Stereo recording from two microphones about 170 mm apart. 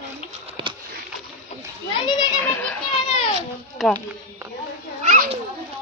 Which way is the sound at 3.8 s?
Centre (ahead or behind).